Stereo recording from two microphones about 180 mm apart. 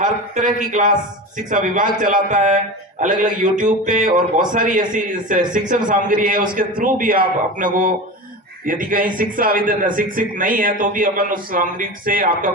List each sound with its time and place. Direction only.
0.0 s a man's voice: 45° right (ahead or behind)